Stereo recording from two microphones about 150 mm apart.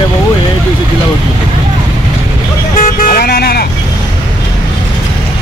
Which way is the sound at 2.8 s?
80° left.